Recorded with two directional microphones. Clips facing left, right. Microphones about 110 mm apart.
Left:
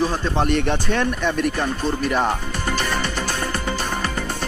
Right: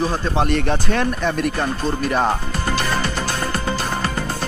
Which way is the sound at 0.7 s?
40° right (ahead or behind).